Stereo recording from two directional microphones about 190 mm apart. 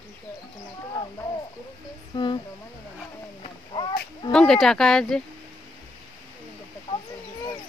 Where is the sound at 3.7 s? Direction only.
25° left (ahead or behind).